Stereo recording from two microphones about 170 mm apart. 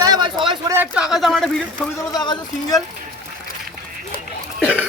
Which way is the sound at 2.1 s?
25° left (ahead or behind).